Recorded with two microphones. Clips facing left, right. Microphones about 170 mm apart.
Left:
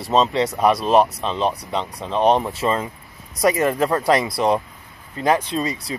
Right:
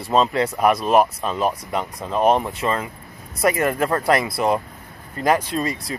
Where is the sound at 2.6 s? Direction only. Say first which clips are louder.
Left 2 dB; 25° left (ahead or behind).